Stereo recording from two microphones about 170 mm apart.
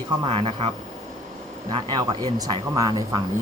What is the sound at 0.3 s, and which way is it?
Speech, 35° right (ahead or behind).